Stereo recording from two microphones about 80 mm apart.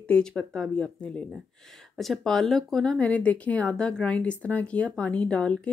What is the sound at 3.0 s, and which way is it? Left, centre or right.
A woman's voice, centre.